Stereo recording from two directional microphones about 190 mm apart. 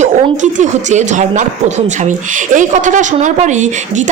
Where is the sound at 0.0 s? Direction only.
40° right (ahead or behind).